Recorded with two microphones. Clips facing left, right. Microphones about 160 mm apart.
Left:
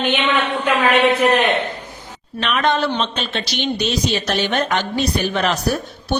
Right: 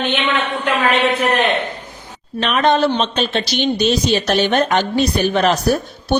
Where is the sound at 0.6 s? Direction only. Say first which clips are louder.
Left 1 dB; 10° left (ahead or behind).